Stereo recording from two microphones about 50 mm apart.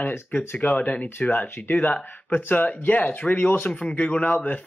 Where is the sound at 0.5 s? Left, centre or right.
Left.